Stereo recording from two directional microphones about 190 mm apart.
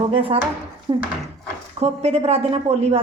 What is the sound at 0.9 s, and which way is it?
Speech, 20° right (ahead or behind).